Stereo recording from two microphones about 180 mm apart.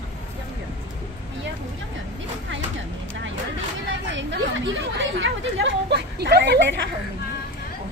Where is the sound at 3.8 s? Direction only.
90° right; by 6.5 s 65° right (ahead or behind).